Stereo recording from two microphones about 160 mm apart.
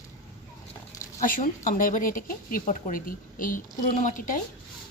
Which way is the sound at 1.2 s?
55° left (ahead or behind).